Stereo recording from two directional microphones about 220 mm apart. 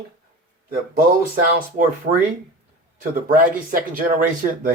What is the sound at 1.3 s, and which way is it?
Speech, 40° right (ahead or behind).